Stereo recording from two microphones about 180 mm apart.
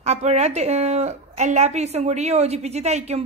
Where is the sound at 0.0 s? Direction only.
35° right (ahead or behind).